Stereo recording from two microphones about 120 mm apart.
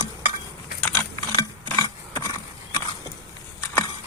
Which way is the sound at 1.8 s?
30° left (ahead or behind).